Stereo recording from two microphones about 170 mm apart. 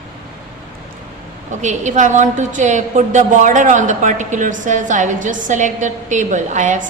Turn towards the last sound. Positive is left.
turn(degrees=-45)  # may be behind; listen again after turning